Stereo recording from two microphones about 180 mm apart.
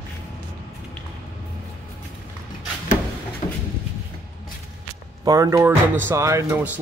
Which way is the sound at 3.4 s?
30° left (ahead or behind).